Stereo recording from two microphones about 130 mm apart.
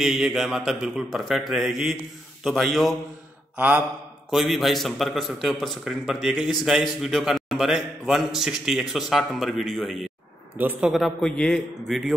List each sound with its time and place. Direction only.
0.0 s a man's voice: 5° right (ahead or behind)
3.5 s mantra: 10° right (ahead or behind)
4.3 s a man's voice: centre (ahead or behind)
10.6 s a man's voice: 15° right (ahead or behind)
10.9 s a man's voice: centre (ahead or behind)